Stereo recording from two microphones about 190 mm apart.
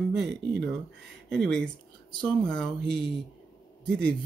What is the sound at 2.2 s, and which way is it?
Speech, 5° left (ahead or behind).